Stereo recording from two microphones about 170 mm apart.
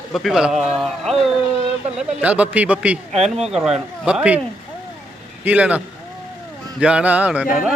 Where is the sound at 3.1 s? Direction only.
40° right (ahead or behind).